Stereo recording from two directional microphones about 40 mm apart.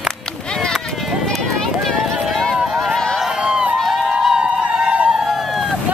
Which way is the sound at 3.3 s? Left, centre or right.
Right.